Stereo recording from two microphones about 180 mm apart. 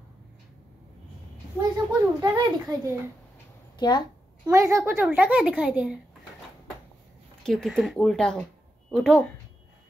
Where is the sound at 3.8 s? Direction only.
25° left (ahead or behind).